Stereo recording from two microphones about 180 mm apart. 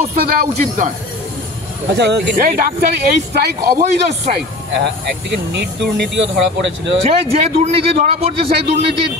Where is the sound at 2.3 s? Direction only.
55° right (ahead or behind).